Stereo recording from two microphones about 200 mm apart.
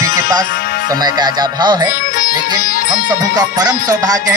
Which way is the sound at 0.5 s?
50° left (ahead or behind).